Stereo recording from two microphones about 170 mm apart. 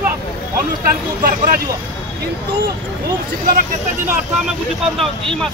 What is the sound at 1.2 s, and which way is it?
Speech, 60° right (ahead or behind).